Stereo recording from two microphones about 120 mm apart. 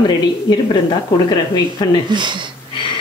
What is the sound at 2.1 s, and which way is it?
Speech, 40° right (ahead or behind).